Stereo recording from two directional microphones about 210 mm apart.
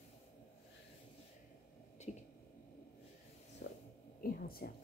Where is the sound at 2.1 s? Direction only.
35° left (ahead or behind).